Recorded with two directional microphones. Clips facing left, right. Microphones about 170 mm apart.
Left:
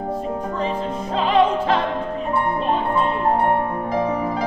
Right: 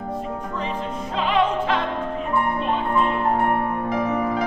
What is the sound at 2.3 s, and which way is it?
Music, 30° left (ahead or behind).